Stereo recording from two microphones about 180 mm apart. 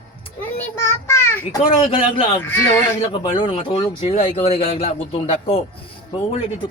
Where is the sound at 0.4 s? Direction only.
10° left (ahead or behind).